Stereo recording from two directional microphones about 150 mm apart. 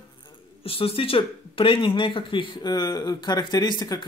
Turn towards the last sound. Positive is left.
turn(degrees=30)  # may be behind; listen again after turning